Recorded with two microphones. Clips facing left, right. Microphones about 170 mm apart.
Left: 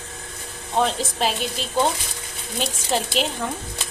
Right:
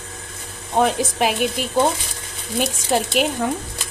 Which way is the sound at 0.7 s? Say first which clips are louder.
Right 4 dB; 10° right (ahead or behind).